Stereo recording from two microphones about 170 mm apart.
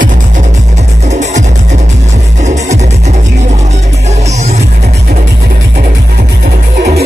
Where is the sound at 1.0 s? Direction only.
40° right (ahead or behind).